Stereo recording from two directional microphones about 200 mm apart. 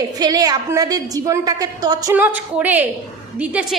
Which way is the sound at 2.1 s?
10° right (ahead or behind).